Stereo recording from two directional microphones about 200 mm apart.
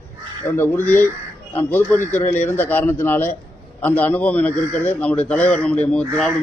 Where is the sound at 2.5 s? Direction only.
10° left (ahead or behind).